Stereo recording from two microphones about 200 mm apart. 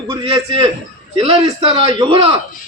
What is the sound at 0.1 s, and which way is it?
Speech, 25° right (ahead or behind).